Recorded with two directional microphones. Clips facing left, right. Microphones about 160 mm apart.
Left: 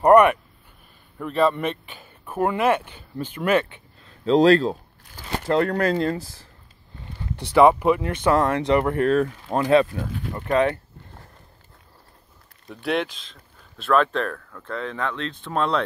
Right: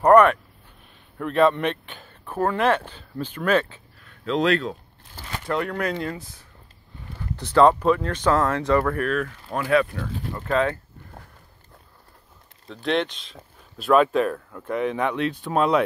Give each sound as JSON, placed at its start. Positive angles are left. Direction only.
{"t": 0.0, "sound": "speech", "side_deg": 10}
{"t": 3.7, "sound": "speech", "side_deg": 25}
{"t": 7.3, "sound": "speech", "side_deg": 15}
{"t": 12.6, "sound": "speech", "side_deg": 5}